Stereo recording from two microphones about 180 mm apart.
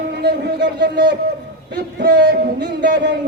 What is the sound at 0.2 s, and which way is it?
Speech, 70° right (ahead or behind).